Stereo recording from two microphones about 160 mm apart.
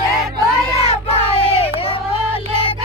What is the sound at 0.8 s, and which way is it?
Child singing, 40° left (ahead or behind).